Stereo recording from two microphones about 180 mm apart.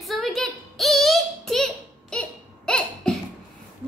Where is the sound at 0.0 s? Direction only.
Centre (ahead or behind).